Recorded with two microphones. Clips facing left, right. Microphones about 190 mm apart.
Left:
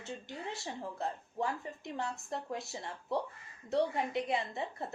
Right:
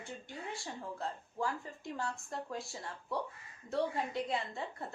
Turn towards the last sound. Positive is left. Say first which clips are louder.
# left 2 dB
turn(degrees=20)  # may be behind; listen again after turning